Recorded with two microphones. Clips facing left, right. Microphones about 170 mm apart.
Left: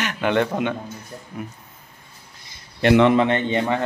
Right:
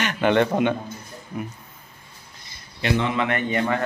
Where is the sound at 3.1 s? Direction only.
25° left (ahead or behind).